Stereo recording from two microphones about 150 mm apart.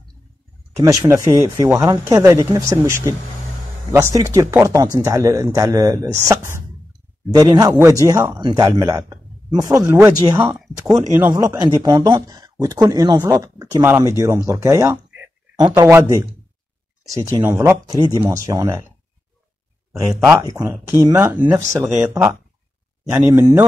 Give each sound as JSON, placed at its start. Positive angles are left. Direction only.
{"t": 0.8, "sound": "a man's voice", "side_deg": -20}
{"t": 19.9, "sound": "speech", "side_deg": 0}
{"t": 20.4, "sound": "a man's voice", "side_deg": -20}
{"t": 23.2, "sound": "speech", "side_deg": -20}